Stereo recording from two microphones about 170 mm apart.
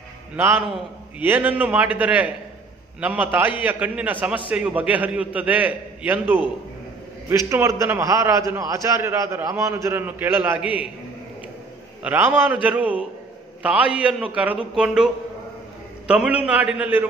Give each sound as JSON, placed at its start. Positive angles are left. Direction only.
{"t": 0.4, "sound": "a man's voice", "side_deg": -15}
{"t": 12.0, "sound": "a man's voice", "side_deg": -10}
{"t": 16.1, "sound": "a man's voice", "side_deg": -5}